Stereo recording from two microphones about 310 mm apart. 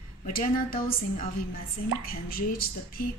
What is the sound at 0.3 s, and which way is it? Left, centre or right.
A woman's voice, left.